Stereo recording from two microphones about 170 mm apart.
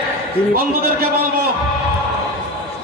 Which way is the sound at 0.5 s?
60° right (ahead or behind).